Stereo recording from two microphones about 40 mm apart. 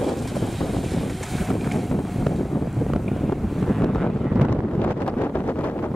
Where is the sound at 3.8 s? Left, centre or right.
Centre.